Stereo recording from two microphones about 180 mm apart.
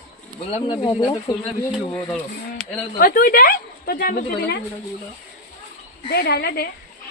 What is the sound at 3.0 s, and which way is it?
A woman's voice, 50° left (ahead or behind).